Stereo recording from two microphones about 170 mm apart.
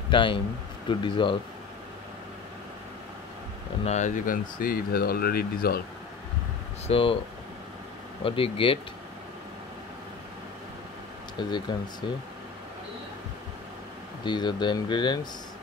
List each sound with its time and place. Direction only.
0.1 s speech: 30° left (ahead or behind)
3.8 s speech: 45° left (ahead or behind); by 5.8 s 60° left (ahead or behind)
6.9 s speech: 35° left (ahead or behind)
8.2 s speech: 30° left (ahead or behind)
11.3 s speech: 25° left (ahead or behind)
14.2 s speech: 25° left (ahead or behind)